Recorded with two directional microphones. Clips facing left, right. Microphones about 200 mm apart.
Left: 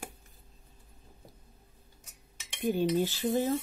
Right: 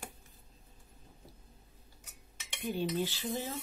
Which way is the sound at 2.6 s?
45° left (ahead or behind).